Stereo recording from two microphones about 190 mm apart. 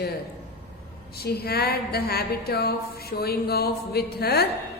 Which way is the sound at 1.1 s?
55° left (ahead or behind).